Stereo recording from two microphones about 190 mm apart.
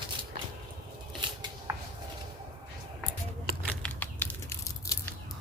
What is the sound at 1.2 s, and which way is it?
Scissors, 25° right (ahead or behind).